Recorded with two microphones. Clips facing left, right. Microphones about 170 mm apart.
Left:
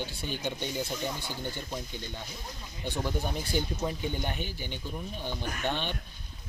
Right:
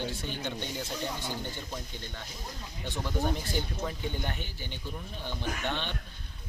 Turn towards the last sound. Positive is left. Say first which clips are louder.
# left 1 dB
turn(degrees=15)  # may be behind; listen again after turning